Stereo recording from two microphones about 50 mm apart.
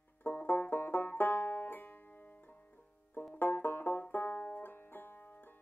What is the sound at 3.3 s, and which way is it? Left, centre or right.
Banjo, left.